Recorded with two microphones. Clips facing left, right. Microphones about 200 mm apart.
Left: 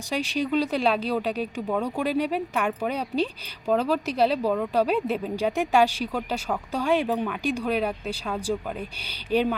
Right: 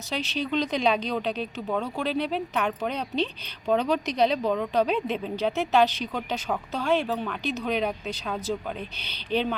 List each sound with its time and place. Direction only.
0.1 s speech: 10° left (ahead or behind)